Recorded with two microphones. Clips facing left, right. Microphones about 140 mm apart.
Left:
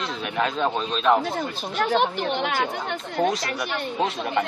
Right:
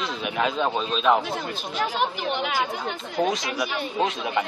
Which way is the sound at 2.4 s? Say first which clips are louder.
Even; 60° left (ahead or behind).